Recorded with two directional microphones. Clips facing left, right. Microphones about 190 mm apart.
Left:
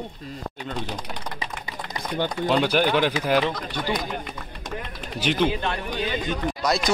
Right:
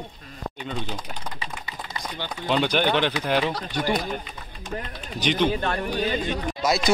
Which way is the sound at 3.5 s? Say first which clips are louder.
Right 2 dB; 45° right (ahead or behind).